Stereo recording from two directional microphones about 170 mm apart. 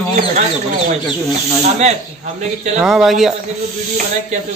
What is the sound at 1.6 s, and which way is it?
Speech, 40° right (ahead or behind).